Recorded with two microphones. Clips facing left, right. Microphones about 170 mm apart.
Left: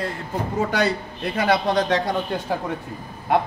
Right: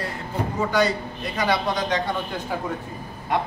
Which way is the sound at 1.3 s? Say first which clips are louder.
Left 4 dB; 55° left (ahead or behind).